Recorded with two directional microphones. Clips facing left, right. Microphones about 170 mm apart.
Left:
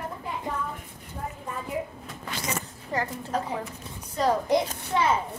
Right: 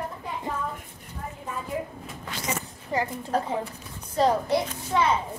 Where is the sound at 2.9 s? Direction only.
15° right (ahead or behind).